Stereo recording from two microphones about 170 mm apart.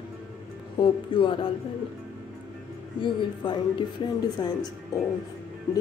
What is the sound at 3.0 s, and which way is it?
Speech, 30° left (ahead or behind).